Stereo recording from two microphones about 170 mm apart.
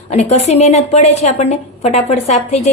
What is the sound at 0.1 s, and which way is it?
A woman's voice, 40° left (ahead or behind).